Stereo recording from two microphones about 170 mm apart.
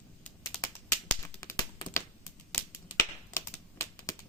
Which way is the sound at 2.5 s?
15° left (ahead or behind).